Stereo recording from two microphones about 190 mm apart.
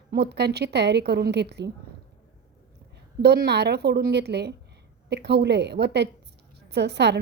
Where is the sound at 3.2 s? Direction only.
60° right (ahead or behind).